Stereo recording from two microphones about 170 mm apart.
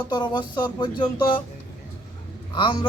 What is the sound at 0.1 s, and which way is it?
Speech, 25° left (ahead or behind).